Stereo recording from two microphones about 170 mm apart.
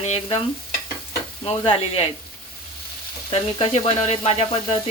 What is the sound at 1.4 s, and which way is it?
Speech, 35° left (ahead or behind).